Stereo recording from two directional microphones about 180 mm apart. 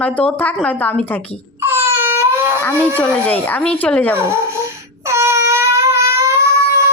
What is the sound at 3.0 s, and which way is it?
A woman's voice, 10° left (ahead or behind).